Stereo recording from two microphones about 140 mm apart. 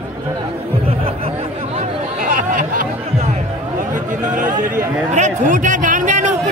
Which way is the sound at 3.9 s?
70° right (ahead or behind).